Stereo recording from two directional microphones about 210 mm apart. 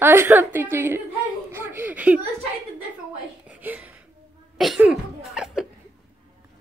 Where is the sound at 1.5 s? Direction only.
10° right (ahead or behind).